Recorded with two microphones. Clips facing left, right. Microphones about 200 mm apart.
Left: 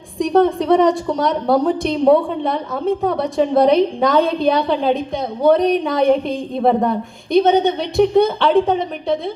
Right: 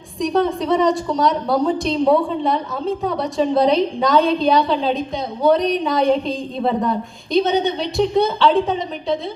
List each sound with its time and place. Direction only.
0.2 s a woman's voice: 55° left (ahead or behind)